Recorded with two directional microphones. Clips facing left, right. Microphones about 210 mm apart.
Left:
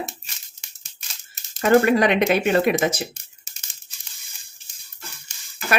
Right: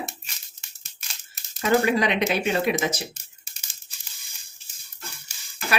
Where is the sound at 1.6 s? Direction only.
50° left (ahead or behind).